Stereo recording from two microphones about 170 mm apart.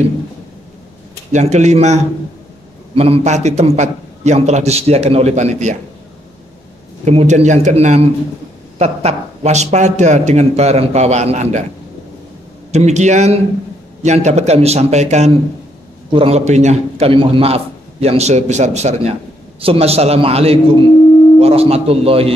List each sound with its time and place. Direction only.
1.3 s speech: 40° right (ahead or behind)
7.1 s speech: 40° right (ahead or behind)
12.7 s speech: 45° right (ahead or behind)